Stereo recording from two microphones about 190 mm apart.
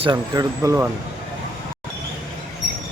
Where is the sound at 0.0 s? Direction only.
20° right (ahead or behind).